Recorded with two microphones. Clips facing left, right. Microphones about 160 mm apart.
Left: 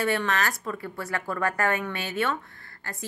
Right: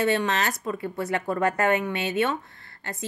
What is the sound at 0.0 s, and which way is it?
Speech, 20° right (ahead or behind).